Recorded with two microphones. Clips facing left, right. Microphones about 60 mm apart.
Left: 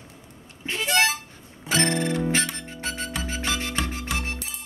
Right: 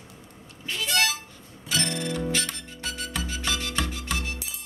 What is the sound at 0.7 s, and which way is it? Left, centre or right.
Harmonica, left.